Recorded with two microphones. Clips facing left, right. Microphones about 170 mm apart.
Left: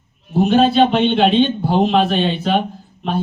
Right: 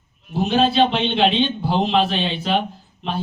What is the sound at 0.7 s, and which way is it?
Speech, 50° left (ahead or behind).